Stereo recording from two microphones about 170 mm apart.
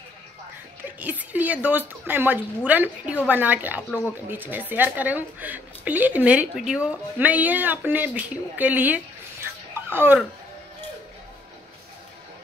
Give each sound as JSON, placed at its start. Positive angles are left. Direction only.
{"t": 1.0, "sound": "a woman's voice", "side_deg": -10}